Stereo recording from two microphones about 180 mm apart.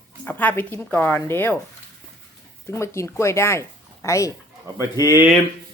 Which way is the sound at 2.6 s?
15° left (ahead or behind).